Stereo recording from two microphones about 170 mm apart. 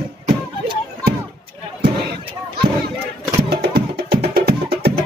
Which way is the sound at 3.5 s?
70° right (ahead or behind).